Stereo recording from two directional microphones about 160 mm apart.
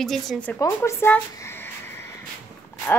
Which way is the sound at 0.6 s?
15° left (ahead or behind).